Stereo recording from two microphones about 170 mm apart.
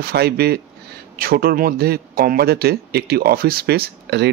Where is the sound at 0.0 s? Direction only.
70° right (ahead or behind).